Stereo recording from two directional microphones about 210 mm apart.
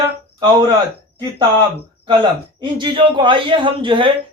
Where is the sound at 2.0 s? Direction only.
20° right (ahead or behind).